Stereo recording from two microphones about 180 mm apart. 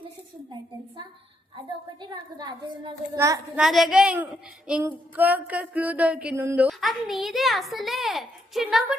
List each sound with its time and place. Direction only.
2.0 s a child's voice: 25° right (ahead or behind)
3.6 s speech: centre (ahead or behind)
4.8 s a sound: 10° right (ahead or behind)
6.7 s speech: centre (ahead or behind)